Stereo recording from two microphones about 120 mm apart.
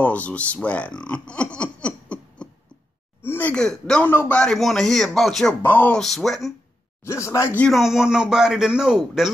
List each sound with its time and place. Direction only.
0.0 s speech: 10° left (ahead or behind)
3.3 s a sound: 15° left (ahead or behind)
3.5 s a man's voice: 5° left (ahead or behind)
4.1 s speech: 20° left (ahead or behind)
4.4 s a man's voice: 5° left (ahead or behind)
5.6 s speech: 15° left (ahead or behind)
5.9 s a man's voice: centre (ahead or behind)
7.1 s speech: 20° left (ahead or behind)
7.6 s a man's voice: centre (ahead or behind)